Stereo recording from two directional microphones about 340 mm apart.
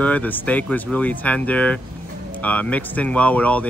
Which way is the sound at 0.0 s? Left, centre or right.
Centre.